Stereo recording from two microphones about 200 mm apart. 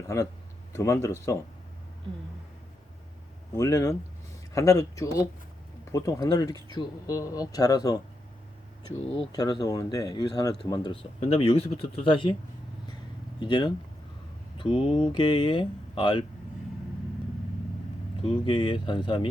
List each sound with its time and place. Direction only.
0.1 s speech: 15° left (ahead or behind)
3.5 s speech: 15° left (ahead or behind)
9.3 s speech: 20° left (ahead or behind)
13.4 s speech: 20° left (ahead or behind)
18.2 s speech: 25° left (ahead or behind)